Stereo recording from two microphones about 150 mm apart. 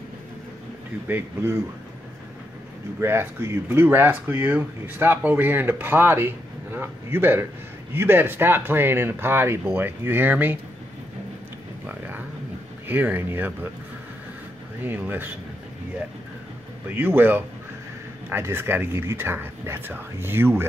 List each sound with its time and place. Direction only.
1.0 s speech: 15° right (ahead or behind)
3.0 s speech: 15° right (ahead or behind)
11.8 s a sound: 10° right (ahead or behind)
12.8 s speech: 10° right (ahead or behind)
14.8 s speech: 10° right (ahead or behind)
16.9 s speech: 15° right (ahead or behind)